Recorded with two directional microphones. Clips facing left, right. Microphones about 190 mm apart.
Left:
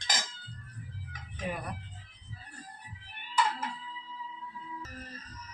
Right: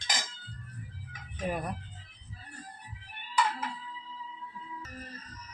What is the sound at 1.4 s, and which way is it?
Speech, 45° right (ahead or behind).